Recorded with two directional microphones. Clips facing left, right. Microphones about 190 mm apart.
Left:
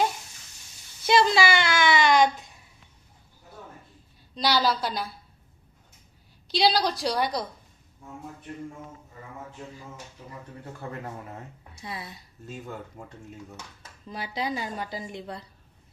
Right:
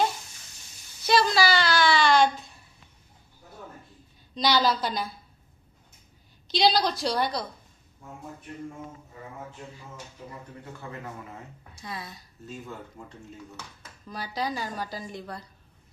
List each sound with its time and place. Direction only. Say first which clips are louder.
1.0 s a woman's voice: left 1 dB; 20° left (ahead or behind)
4.4 s a woman's voice: right 1 dB; 5° left (ahead or behind)
6.5 s a woman's voice: even; 5° left (ahead or behind)
10.8 s a man's voice: left 4 dB; 40° left (ahead or behind)
11.7 s speech: even; 25° left (ahead or behind)
14.1 s a woman's voice: left 1 dB; 25° left (ahead or behind)